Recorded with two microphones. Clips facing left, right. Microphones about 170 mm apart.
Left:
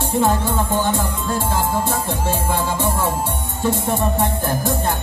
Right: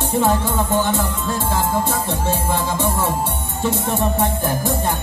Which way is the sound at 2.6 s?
15° right (ahead or behind).